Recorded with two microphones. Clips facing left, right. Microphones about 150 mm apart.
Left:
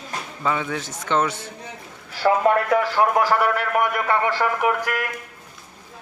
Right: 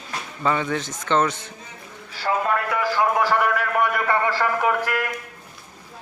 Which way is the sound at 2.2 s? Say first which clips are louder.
Left 5 dB; 60° left (ahead or behind).